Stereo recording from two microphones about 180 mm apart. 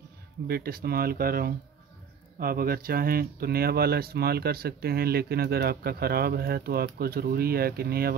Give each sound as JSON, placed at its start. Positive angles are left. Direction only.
{"t": 0.5, "sound": "speech", "side_deg": -55}